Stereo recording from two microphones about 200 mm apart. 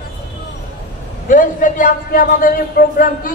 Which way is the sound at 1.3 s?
40° left (ahead or behind).